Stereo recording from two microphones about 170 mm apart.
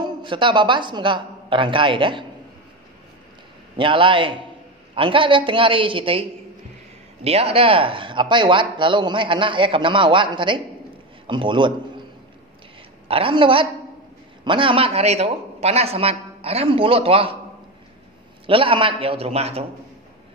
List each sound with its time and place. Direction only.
0.0 s a woman's voice: 30° right (ahead or behind)
3.7 s a man's voice: 30° right (ahead or behind)
7.2 s speech: 35° right (ahead or behind)
13.1 s a man's voice: 30° right (ahead or behind)
18.5 s a man's voice: 30° right (ahead or behind)